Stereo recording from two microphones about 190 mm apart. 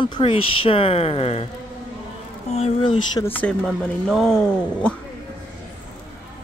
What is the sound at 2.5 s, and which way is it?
Speech, 35° left (ahead or behind).